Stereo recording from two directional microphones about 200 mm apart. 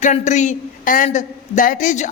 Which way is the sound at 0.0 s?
35° left (ahead or behind).